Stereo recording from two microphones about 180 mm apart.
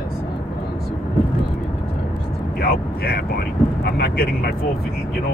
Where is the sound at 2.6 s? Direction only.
55° left (ahead or behind).